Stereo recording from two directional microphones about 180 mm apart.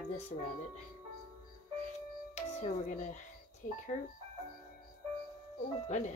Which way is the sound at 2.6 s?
45° left (ahead or behind).